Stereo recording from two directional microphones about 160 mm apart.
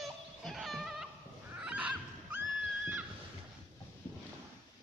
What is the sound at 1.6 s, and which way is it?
Goose, 10° right (ahead or behind).